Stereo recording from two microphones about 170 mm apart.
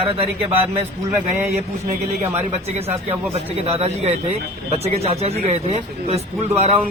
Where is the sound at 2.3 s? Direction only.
40° right (ahead or behind).